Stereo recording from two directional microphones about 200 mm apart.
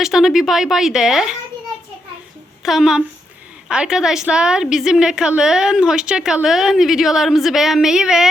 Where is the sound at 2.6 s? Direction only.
Centre (ahead or behind).